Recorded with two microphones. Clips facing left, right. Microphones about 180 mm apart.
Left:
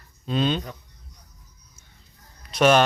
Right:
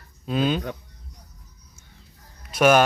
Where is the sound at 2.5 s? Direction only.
5° right (ahead or behind).